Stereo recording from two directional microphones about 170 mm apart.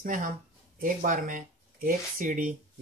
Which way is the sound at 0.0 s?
55° right (ahead or behind).